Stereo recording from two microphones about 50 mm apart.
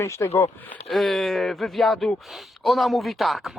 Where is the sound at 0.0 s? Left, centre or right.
Left.